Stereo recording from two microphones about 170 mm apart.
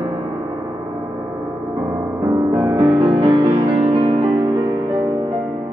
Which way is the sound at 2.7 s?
30° right (ahead or behind).